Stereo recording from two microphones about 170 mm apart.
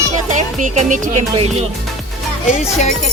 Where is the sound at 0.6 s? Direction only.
50° right (ahead or behind).